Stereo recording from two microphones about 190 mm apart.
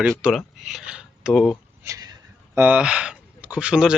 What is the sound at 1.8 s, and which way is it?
Speech, 15° right (ahead or behind).